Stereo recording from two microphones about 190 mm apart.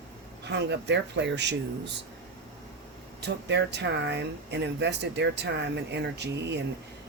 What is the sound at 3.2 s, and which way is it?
Speech, 65° right (ahead or behind).